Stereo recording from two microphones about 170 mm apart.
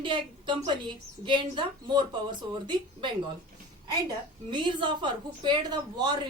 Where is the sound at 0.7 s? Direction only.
25° right (ahead or behind).